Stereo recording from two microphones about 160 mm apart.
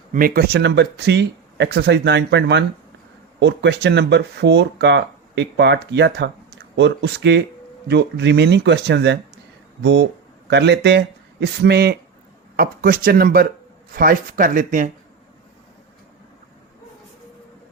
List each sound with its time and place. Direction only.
0.1 s speech: 65° right (ahead or behind); by 11.9 s 90° right
12.5 s speech: 65° right (ahead or behind)